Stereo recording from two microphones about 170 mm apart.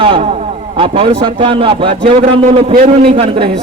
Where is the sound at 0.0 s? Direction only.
35° right (ahead or behind).